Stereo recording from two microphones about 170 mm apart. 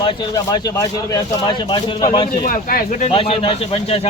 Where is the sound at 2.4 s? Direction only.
55° left (ahead or behind).